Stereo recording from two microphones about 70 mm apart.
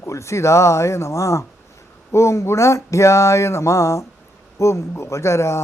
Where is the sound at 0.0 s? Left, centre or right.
Left.